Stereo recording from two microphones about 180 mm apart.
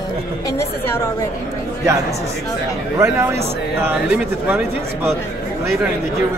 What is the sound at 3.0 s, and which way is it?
Speech, 15° right (ahead or behind).